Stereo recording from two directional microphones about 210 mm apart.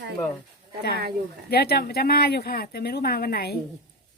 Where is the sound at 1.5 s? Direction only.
50° left (ahead or behind).